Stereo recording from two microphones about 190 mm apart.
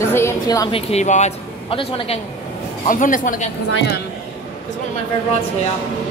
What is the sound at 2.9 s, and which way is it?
Speech, 45° left (ahead or behind).